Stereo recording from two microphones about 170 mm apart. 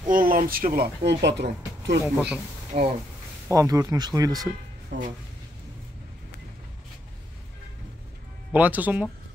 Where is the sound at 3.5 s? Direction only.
20° right (ahead or behind).